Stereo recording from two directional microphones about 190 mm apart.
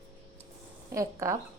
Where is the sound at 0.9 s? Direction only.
15° right (ahead or behind).